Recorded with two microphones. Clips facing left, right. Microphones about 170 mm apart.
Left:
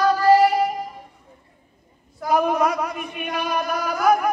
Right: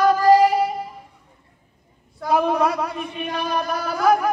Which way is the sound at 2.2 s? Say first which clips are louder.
Even; centre (ahead or behind).